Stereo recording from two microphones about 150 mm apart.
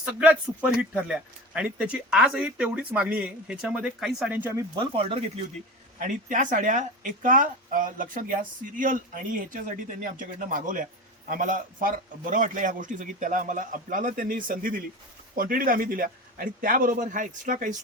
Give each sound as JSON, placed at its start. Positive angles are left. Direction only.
{"t": 0.0, "sound": "a man's voice", "side_deg": -10}
{"t": 4.7, "sound": "speech", "side_deg": -40}
{"t": 6.0, "sound": "a man's voice", "side_deg": -60}